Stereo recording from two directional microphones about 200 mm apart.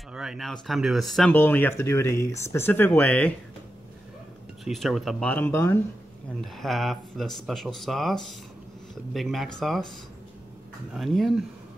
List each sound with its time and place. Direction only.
0.1 s speech: 5° right (ahead or behind)
4.6 s speech: centre (ahead or behind)
6.4 s speech: centre (ahead or behind)
10.9 s speech: centre (ahead or behind)